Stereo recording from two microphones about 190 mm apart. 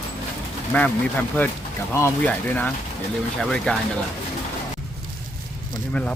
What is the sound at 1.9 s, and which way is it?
Speech, 10° left (ahead or behind).